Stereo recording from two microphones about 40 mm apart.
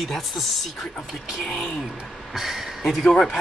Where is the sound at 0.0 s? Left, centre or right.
Centre.